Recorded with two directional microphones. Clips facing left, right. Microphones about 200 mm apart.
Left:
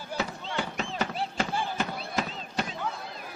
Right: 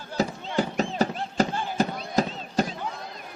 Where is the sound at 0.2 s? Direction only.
40° right (ahead or behind).